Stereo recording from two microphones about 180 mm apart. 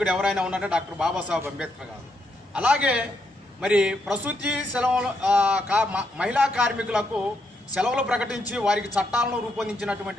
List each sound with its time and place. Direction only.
0.0 s a man's voice: 5° right (ahead or behind)